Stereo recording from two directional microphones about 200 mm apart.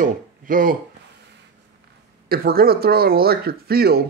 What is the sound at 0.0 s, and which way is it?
Speech, 45° right (ahead or behind).